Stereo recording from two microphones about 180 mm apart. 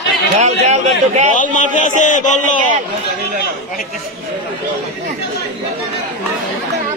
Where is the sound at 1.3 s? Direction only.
45° left (ahead or behind).